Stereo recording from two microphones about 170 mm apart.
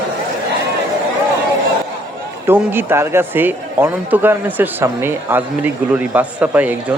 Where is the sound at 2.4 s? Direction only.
15° right (ahead or behind).